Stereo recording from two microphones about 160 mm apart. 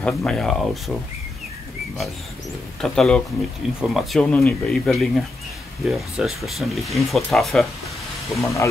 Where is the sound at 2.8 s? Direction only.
5° left (ahead or behind).